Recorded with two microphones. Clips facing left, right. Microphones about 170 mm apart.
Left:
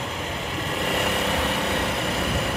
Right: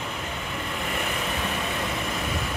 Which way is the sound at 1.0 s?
75° left (ahead or behind).